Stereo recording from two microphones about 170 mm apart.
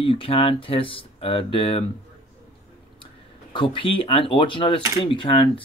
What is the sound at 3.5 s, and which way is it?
Speech, 30° left (ahead or behind).